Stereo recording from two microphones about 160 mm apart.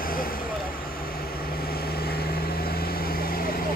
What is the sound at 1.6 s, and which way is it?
Vehicle, 75° left (ahead or behind).